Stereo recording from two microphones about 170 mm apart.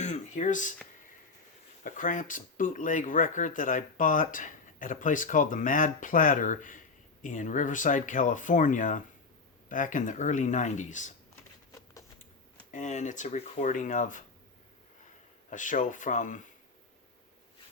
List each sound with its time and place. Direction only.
0.0 s a sound: 45° left (ahead or behind)
1.8 s speech: 50° left (ahead or behind)
12.7 s speech: 45° left (ahead or behind)
15.4 s speech: 50° left (ahead or behind)